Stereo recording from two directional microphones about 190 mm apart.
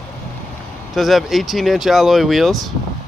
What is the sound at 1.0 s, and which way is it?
Speech, centre (ahead or behind).